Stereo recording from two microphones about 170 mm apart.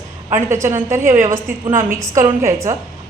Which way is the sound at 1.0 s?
50° right (ahead or behind).